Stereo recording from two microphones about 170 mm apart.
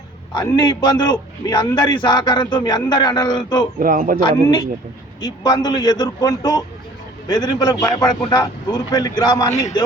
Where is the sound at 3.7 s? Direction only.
55° right (ahead or behind).